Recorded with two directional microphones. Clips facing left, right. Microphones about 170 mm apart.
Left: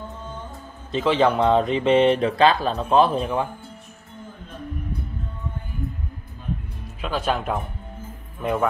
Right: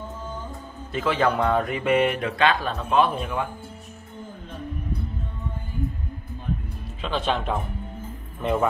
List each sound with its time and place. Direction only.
0.9 s speech: 20° left (ahead or behind)
7.0 s a man's voice: 5° left (ahead or behind)